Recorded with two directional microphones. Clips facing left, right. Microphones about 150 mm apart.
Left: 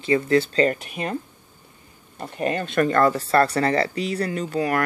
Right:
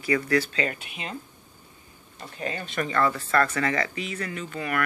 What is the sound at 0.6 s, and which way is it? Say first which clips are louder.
Speech: left 9 dB; 45° left (ahead or behind).